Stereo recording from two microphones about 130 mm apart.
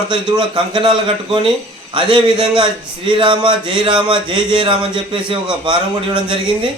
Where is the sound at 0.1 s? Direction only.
40° right (ahead or behind).